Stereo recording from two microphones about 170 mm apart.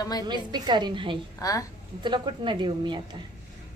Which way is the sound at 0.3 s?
25° right (ahead or behind).